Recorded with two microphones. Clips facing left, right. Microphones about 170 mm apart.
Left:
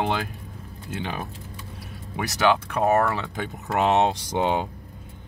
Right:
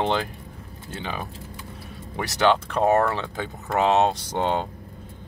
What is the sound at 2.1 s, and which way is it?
Speech, 10° left (ahead or behind).